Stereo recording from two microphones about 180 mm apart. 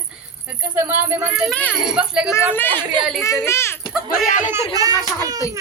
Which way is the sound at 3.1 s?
15° left (ahead or behind).